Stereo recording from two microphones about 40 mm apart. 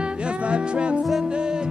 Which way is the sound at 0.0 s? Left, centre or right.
Right.